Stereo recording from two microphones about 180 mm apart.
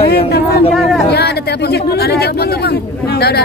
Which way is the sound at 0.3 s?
60° left (ahead or behind).